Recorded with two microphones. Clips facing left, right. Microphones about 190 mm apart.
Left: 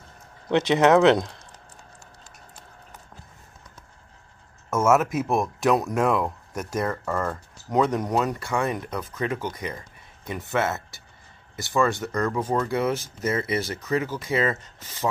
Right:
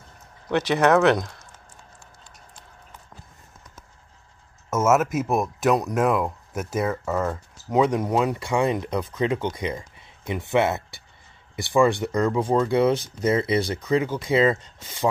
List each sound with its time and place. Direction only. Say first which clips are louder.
0.5 s speech: left 1 dB; 20° left (ahead or behind)
4.6 s speech: even; 5° right (ahead or behind)